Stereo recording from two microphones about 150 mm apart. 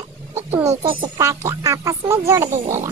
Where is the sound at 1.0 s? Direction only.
20° right (ahead or behind).